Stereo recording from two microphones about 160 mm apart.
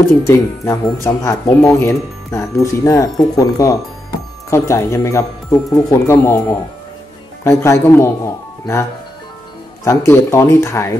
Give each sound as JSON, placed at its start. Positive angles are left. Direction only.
{"t": 0.2, "sound": "speech", "side_deg": 20}
{"t": 9.8, "sound": "speech", "side_deg": 15}